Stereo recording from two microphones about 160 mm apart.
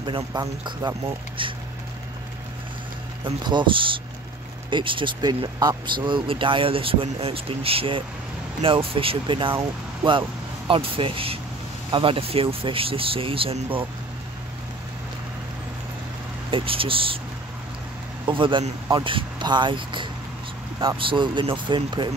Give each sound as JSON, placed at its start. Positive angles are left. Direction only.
{"t": 0.0, "sound": "speech", "side_deg": -25}
{"t": 3.3, "sound": "speech", "side_deg": -30}
{"t": 16.4, "sound": "speech", "side_deg": -35}
{"t": 18.2, "sound": "speech", "side_deg": -30}